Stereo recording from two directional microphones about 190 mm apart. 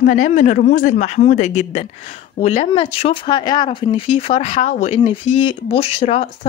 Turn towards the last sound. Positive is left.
turn(degrees=35)  # may be behind; listen again after turning